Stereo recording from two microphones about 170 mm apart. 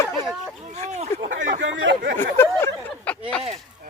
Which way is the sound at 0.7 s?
40° right (ahead or behind).